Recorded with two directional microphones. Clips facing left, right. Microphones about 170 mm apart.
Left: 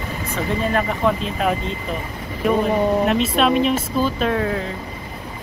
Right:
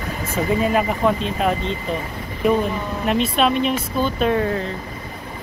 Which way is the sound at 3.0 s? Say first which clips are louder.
Left 1 dB; centre (ahead or behind).